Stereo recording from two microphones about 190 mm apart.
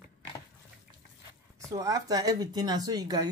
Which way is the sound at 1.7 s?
20° right (ahead or behind).